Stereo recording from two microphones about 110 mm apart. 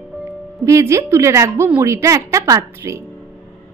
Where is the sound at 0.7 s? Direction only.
30° right (ahead or behind).